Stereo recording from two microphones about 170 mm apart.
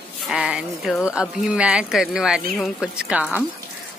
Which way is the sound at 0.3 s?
5° right (ahead or behind).